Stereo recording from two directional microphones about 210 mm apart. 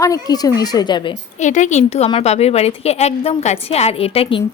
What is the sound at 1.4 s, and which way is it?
A woman's voice, 35° left (ahead or behind).